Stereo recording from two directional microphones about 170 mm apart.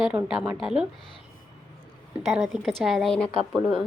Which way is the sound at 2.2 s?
Centre (ahead or behind).